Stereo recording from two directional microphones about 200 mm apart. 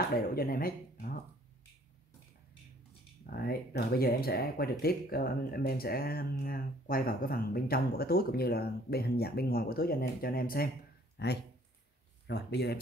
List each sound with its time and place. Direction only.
0.3 s speech: 45° left (ahead or behind)
3.3 s speech: 50° left (ahead or behind)